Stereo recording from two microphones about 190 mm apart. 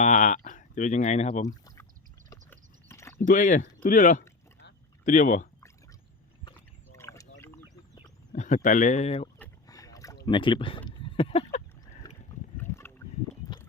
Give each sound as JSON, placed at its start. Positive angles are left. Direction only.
{"t": 0.0, "sound": "speech", "side_deg": 40}
{"t": 1.5, "sound": "rowboat", "side_deg": 15}
{"t": 2.3, "sound": "a sound", "side_deg": 15}
{"t": 3.2, "sound": "speech", "side_deg": 40}
{"t": 6.9, "sound": "a sound", "side_deg": 15}
{"t": 8.3, "sound": "speech", "side_deg": 40}
{"t": 9.6, "sound": "boat", "side_deg": 20}
{"t": 10.2, "sound": "speech", "side_deg": 25}
{"t": 12.0, "sound": "a sound", "side_deg": 20}